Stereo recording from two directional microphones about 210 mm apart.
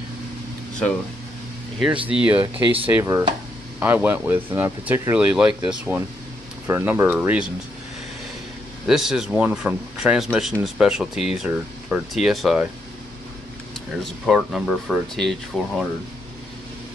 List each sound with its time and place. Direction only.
2.0 s speech: 5° right (ahead or behind)
2.3 s speech: 20° right (ahead or behind)
2.9 s speech: 10° right (ahead or behind)
8.8 s speech: centre (ahead or behind)
14.2 s speech: centre (ahead or behind)